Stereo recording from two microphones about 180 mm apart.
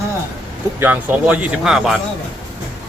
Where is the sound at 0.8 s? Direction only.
10° right (ahead or behind).